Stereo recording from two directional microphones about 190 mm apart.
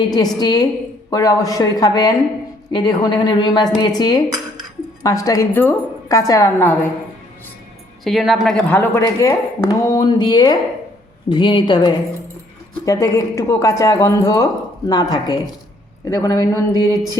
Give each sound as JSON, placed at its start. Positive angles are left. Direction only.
{"t": 0.1, "sound": "a man's voice", "side_deg": 20}
{"t": 8.0, "sound": "a woman's voice", "side_deg": 0}